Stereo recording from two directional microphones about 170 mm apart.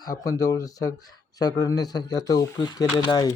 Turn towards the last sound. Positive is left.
turn(degrees=20)  # may be behind; listen again after turning